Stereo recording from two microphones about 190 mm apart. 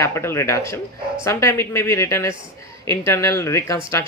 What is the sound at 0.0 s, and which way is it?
Speech, 15° left (ahead or behind).